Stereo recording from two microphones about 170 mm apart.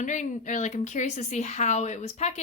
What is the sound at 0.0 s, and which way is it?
A woman's voice, 45° left (ahead or behind).